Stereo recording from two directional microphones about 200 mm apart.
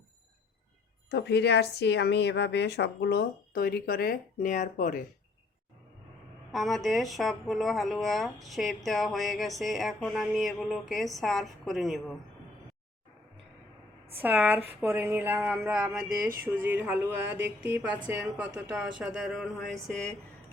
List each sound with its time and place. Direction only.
1.1 s a woman's voice: 55° left (ahead or behind)
6.5 s speech: centre (ahead or behind)
14.2 s speech: 10° right (ahead or behind)